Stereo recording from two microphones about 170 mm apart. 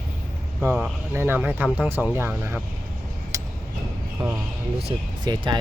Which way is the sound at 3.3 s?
20° right (ahead or behind).